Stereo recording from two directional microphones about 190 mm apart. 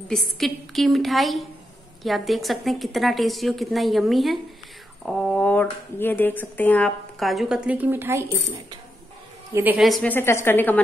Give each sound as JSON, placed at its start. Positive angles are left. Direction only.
{"t": 0.1, "sound": "speech", "side_deg": 0}
{"t": 10.1, "sound": "a woman's voice", "side_deg": 10}